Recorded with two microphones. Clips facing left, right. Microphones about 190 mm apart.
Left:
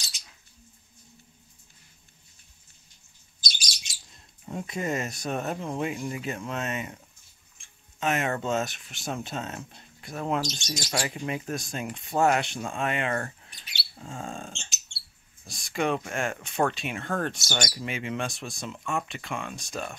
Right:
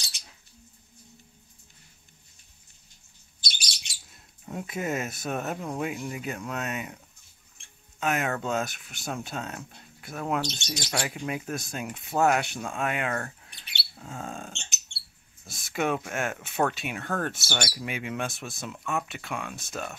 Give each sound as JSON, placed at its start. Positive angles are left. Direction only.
{"t": 3.4, "sound": "bird", "side_deg": -60}
{"t": 4.0, "sound": "speech", "side_deg": -5}
{"t": 8.0, "sound": "speech", "side_deg": 0}
{"t": 10.4, "sound": "speech", "side_deg": -65}
{"t": 10.8, "sound": "speech", "side_deg": 10}
{"t": 11.1, "sound": "speech", "side_deg": 0}